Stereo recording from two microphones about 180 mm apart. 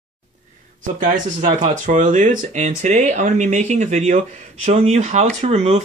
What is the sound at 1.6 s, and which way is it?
Speech, 45° right (ahead or behind).